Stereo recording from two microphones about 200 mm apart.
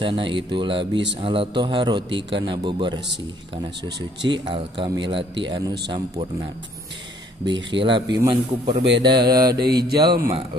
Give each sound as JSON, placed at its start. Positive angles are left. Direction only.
{"t": 0.0, "sound": "a man's voice", "side_deg": -25}
{"t": 4.3, "sound": "a man's voice", "side_deg": -20}
{"t": 7.4, "sound": "a man's voice", "side_deg": -25}
{"t": 9.7, "sound": "mantra", "side_deg": -55}